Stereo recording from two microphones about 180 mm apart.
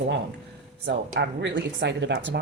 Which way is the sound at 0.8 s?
75° right (ahead or behind).